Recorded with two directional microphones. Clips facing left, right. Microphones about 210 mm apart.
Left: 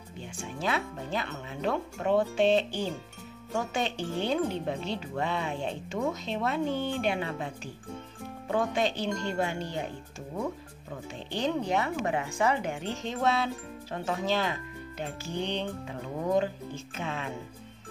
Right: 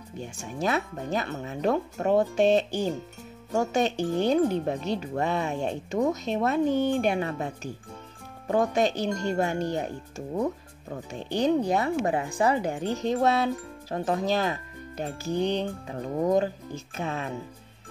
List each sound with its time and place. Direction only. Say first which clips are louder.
0.2 s speech: right 4 dB; 45° right (ahead or behind)
11.2 s speech: right 6 dB; 40° right (ahead or behind)